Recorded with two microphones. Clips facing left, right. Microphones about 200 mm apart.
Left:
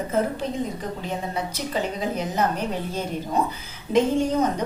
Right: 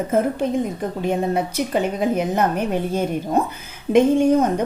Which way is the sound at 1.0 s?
55° right (ahead or behind).